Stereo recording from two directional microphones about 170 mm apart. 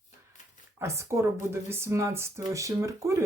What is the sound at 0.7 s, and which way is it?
Speech, 15° right (ahead or behind).